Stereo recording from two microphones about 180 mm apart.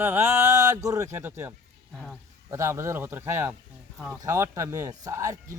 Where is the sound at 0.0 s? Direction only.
15° right (ahead or behind).